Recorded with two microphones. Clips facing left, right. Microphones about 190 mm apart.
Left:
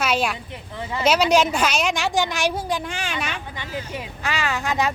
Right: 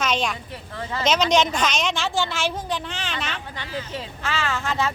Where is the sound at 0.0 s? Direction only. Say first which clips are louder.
Left 2 dB; 10° left (ahead or behind).